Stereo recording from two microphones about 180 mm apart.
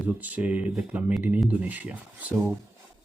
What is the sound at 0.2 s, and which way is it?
Speech, 10° right (ahead or behind).